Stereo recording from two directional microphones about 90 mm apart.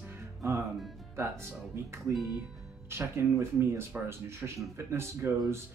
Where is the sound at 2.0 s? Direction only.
Centre (ahead or behind).